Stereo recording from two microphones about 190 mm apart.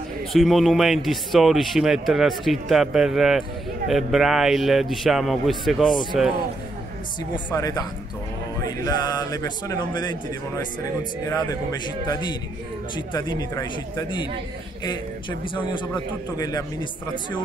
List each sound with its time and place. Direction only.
0.3 s speech: centre (ahead or behind)
7.3 s speech: 20° left (ahead or behind)
8.8 s speech: 20° left (ahead or behind)